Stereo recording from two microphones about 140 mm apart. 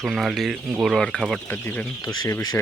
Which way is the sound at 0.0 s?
Centre (ahead or behind).